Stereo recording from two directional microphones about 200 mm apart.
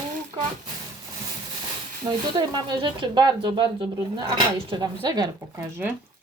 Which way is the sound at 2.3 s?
20° right (ahead or behind).